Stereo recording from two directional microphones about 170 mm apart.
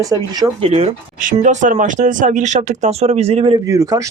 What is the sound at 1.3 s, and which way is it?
Speech, 45° right (ahead or behind).